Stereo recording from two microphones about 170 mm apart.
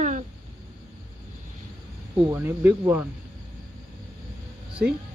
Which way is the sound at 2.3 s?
15° right (ahead or behind).